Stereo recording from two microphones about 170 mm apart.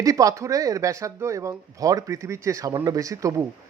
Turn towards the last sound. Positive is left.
turn(degrees=-20)  # may be behind; listen again after turning